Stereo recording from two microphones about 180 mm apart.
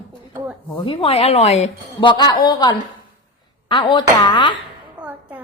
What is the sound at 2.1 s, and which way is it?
A woman's voice, 25° left (ahead or behind).